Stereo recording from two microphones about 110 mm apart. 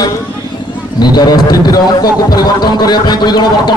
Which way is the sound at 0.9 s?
40° left (ahead or behind).